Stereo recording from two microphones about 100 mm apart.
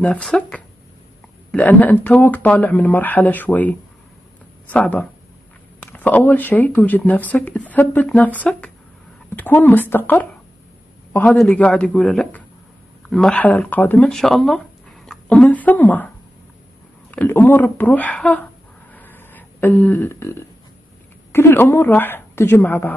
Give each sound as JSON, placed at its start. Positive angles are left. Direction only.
{"t": 0.0, "sound": "a woman's voice", "side_deg": 10}
{"t": 11.3, "sound": "speech", "side_deg": 10}
{"t": 17.1, "sound": "speech", "side_deg": 15}
{"t": 18.9, "sound": "a sound", "side_deg": 20}
{"t": 19.7, "sound": "speech", "side_deg": 10}
{"t": 20.1, "sound": "a woman's voice", "side_deg": 25}